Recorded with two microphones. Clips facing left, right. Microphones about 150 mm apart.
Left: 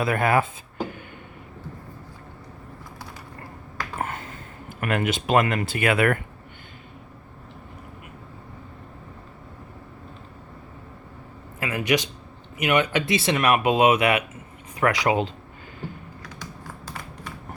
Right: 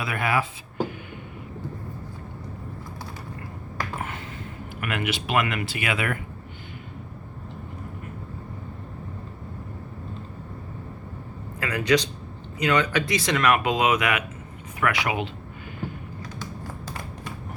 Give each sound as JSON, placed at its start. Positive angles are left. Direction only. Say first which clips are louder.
{"t": 0.0, "sound": "speech", "louder": "left 4 dB", "side_deg": 50}
{"t": 4.8, "sound": "speech", "louder": "left 4 dB", "side_deg": 40}
{"t": 11.6, "sound": "speech", "louder": "right 1 dB", "side_deg": 20}